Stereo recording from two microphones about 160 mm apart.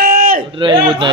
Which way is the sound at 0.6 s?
30° right (ahead or behind).